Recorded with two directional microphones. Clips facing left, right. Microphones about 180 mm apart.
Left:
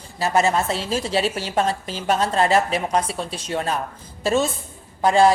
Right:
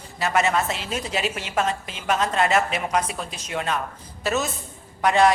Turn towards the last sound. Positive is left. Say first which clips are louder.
# left 3 dB
turn(degrees=30)  # may be behind; listen again after turning